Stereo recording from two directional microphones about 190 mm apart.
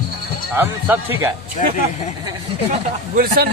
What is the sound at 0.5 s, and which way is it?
Speech, 10° right (ahead or behind).